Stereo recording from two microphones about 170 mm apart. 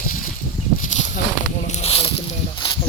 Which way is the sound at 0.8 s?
45° left (ahead or behind).